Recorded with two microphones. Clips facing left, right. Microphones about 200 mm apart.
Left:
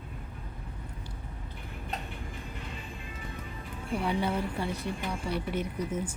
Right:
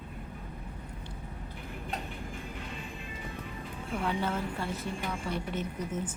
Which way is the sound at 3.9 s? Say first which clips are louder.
Left 2 dB; 15° left (ahead or behind).